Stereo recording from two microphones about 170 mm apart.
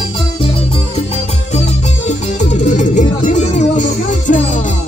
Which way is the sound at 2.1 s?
45° left (ahead or behind).